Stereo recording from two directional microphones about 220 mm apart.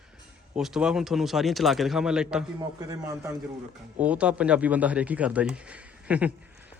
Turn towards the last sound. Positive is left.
turn(degrees=-5)  # may be behind; listen again after turning